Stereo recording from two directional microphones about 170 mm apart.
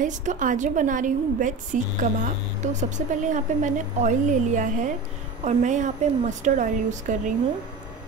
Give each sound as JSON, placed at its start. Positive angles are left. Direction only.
{"t": 0.0, "sound": "a woman's voice", "side_deg": -50}